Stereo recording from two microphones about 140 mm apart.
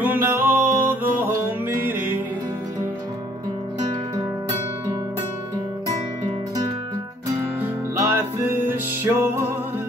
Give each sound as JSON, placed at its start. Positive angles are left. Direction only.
{"t": 0.0, "sound": "music", "side_deg": -15}
{"t": 7.6, "sound": "music", "side_deg": -15}